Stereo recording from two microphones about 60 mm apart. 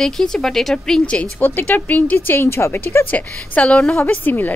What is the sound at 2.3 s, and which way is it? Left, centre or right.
Speech, left.